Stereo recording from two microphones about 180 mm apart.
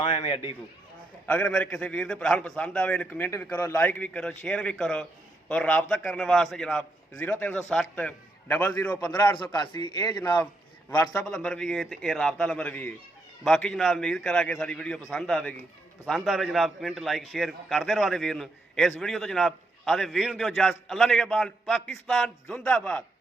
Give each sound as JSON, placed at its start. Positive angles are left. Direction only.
{"t": 0.0, "sound": "speech", "side_deg": 30}
{"t": 1.3, "sound": "a man's voice", "side_deg": 5}
{"t": 9.6, "sound": "speech", "side_deg": 25}
{"t": 10.2, "sound": "a man's voice", "side_deg": 10}